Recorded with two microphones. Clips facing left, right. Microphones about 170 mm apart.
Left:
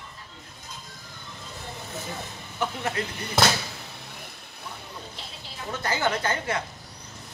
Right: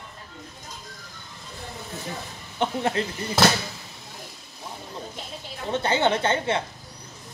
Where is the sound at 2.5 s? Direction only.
30° right (ahead or behind).